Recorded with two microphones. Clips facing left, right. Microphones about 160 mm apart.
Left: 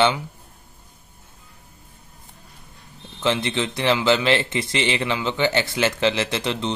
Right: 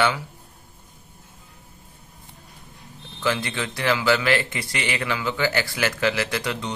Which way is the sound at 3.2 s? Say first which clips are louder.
Left 3 dB; 25° left (ahead or behind).